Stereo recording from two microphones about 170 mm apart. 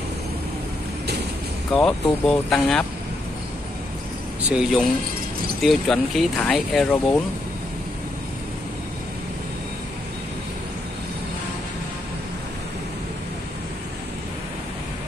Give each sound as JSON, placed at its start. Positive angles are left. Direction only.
{"t": 1.7, "sound": "speech", "side_deg": 5}
{"t": 4.4, "sound": "speech", "side_deg": -5}